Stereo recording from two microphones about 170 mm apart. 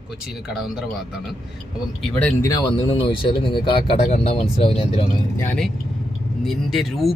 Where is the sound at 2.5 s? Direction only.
25° left (ahead or behind).